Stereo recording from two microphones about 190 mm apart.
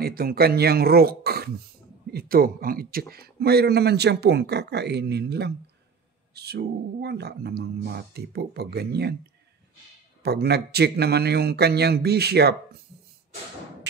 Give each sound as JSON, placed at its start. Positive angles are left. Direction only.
{"t": 0.0, "sound": "speech", "side_deg": -55}
{"t": 10.2, "sound": "speech", "side_deg": -60}